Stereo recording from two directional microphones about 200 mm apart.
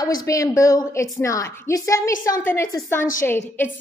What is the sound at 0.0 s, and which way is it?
A woman's voice, 20° left (ahead or behind).